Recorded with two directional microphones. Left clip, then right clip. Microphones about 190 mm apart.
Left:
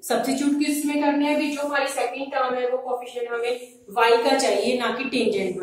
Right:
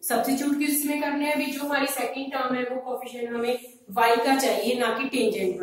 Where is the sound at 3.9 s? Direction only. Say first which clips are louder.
Left 3 dB; 30° left (ahead or behind).